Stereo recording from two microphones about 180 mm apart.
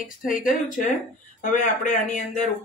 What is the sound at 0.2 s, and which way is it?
A man's voice, 50° left (ahead or behind).